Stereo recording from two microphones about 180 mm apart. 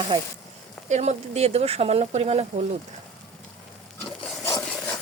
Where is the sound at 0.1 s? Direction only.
25° right (ahead or behind).